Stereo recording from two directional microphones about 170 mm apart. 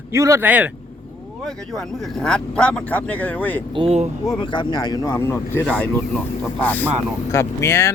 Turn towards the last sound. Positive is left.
turn(degrees=15)  # may be behind; listen again after turning